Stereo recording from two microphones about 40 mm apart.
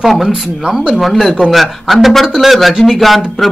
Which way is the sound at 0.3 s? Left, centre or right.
Centre.